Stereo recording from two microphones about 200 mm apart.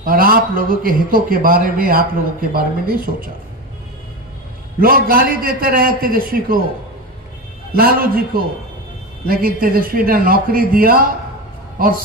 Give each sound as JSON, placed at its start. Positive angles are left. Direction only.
{"t": 0.0, "sound": "a man's voice", "side_deg": -45}
{"t": 4.7, "sound": "a man's voice", "side_deg": -45}
{"t": 7.7, "sound": "a man's voice", "side_deg": -50}